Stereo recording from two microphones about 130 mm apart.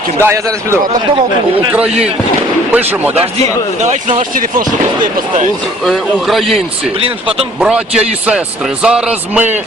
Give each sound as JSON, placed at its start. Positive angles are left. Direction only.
{"t": 0.2, "sound": "a man's voice", "side_deg": -20}
{"t": 1.7, "sound": "speech", "side_deg": -10}
{"t": 5.8, "sound": "a man's voice", "side_deg": 0}
{"t": 7.0, "sound": "speech", "side_deg": -45}
{"t": 7.6, "sound": "a man's voice", "side_deg": -5}